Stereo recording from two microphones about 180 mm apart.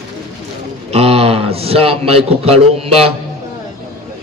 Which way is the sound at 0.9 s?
35° right (ahead or behind).